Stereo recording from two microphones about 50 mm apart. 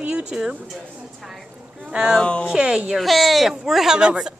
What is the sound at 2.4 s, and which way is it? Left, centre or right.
Speech, centre.